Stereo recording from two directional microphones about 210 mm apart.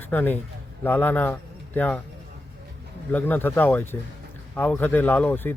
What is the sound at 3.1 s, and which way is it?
A man's voice, 10° left (ahead or behind).